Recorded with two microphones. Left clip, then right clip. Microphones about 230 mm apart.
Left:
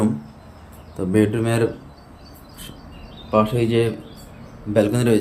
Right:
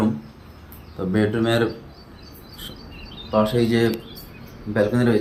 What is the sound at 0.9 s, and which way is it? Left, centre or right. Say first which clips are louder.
Speech: left 3 dB; left.